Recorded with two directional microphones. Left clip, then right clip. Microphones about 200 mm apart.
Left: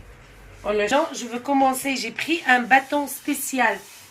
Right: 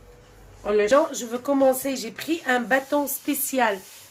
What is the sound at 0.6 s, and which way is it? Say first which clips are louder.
Speech: right 2 dB; 30° right (ahead or behind).